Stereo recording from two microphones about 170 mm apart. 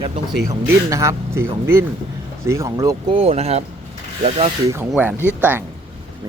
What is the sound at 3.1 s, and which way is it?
Speech, 40° right (ahead or behind).